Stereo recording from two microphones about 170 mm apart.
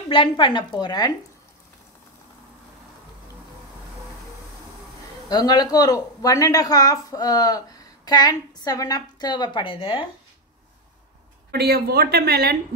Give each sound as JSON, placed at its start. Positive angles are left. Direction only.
{"t": 0.1, "sound": "speech", "side_deg": 30}
{"t": 5.3, "sound": "speech", "side_deg": 25}
{"t": 11.5, "sound": "speech", "side_deg": -70}